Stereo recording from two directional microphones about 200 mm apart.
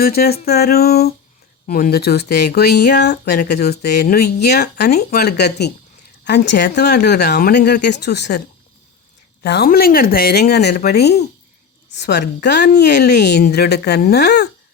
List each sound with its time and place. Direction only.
0.0 s speech: 50° left (ahead or behind)
9.4 s speech: 50° left (ahead or behind)